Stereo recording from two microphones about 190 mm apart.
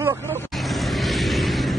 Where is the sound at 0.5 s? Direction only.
Centre (ahead or behind).